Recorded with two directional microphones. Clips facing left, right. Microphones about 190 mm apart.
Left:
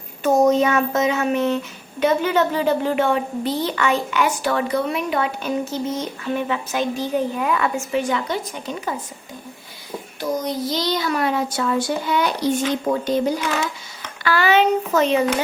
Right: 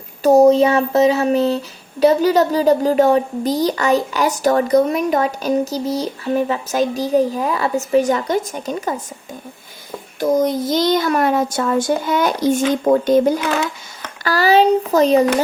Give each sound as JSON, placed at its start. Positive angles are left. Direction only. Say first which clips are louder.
{"t": 0.2, "sound": "speech", "louder": "right 6 dB", "side_deg": -35}
{"t": 10.2, "sound": "a child's voice", "louder": "right 8 dB", "side_deg": -50}
{"t": 14.3, "sound": "speech", "louder": "right 4 dB", "side_deg": -35}